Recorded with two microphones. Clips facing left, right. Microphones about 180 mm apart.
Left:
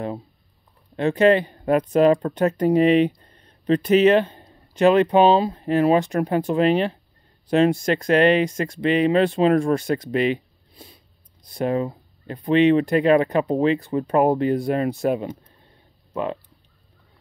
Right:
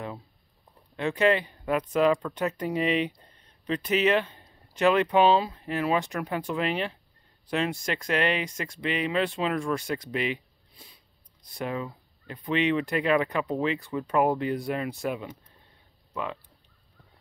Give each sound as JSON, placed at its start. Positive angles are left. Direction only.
{"t": 0.9, "sound": "speech", "side_deg": 40}
{"t": 8.5, "sound": "speech", "side_deg": 50}
{"t": 11.5, "sound": "speech", "side_deg": 40}